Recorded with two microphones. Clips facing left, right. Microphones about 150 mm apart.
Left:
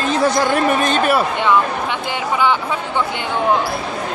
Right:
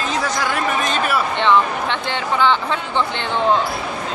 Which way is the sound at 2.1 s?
10° left (ahead or behind).